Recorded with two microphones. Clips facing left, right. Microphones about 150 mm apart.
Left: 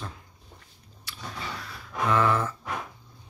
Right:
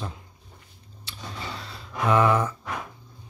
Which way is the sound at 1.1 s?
25° right (ahead or behind).